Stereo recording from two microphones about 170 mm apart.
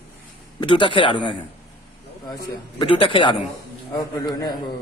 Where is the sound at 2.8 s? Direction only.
30° left (ahead or behind).